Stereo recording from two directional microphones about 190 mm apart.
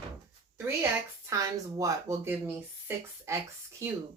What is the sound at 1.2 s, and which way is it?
Speech, 15° right (ahead or behind).